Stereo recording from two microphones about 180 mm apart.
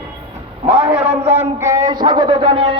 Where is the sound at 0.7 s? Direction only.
30° right (ahead or behind).